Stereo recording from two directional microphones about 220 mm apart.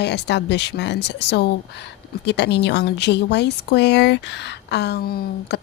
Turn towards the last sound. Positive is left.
turn(degrees=45)  # may be behind; listen again after turning